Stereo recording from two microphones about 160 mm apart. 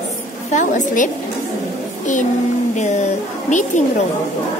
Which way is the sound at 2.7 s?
45° left (ahead or behind).